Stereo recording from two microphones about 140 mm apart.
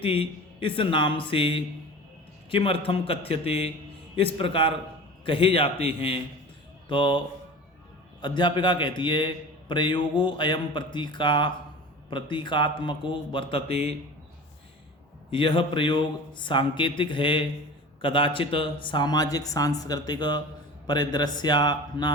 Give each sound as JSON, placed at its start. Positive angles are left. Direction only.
{"t": 0.0, "sound": "a man's voice", "side_deg": 40}
{"t": 8.2, "sound": "a man's voice", "side_deg": 35}
{"t": 15.3, "sound": "a man's voice", "side_deg": 40}